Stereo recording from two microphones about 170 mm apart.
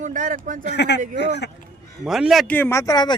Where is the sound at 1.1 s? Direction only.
90° left.